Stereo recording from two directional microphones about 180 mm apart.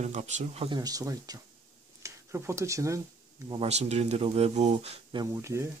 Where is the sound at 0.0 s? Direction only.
40° right (ahead or behind).